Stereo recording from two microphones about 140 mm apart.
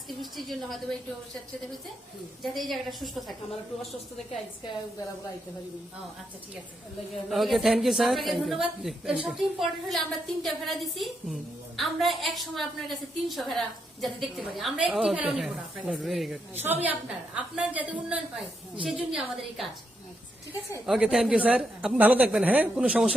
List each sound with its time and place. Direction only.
0.2 s a woman's voice: centre (ahead or behind)
2.4 s a woman's voice: centre (ahead or behind)
7.3 s a woman's voice: centre (ahead or behind)
20.8 s a woman's voice: 5° right (ahead or behind)